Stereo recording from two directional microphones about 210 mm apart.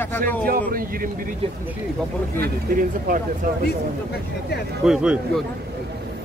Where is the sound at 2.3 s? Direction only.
40° right (ahead or behind).